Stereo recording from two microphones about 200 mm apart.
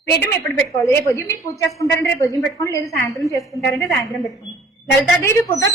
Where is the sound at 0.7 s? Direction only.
15° left (ahead or behind).